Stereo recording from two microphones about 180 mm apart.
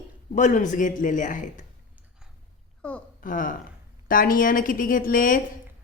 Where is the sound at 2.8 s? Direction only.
5° left (ahead or behind).